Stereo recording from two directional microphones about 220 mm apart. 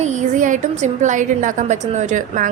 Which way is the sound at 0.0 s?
30° right (ahead or behind).